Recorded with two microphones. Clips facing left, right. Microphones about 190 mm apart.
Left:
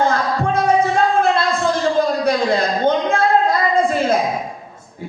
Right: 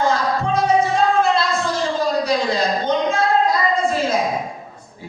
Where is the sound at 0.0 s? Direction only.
55° left (ahead or behind).